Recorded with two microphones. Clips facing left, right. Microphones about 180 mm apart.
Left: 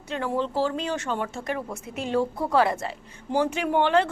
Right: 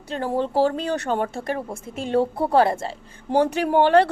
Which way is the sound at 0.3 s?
55° right (ahead or behind).